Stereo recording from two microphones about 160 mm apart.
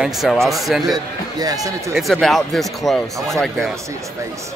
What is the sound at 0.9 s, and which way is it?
Speech, 25° right (ahead or behind).